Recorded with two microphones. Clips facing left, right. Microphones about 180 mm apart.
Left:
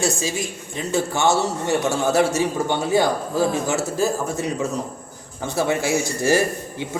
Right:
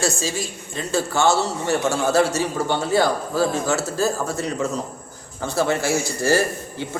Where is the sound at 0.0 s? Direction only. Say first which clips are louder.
Left 1 dB; 15° left (ahead or behind).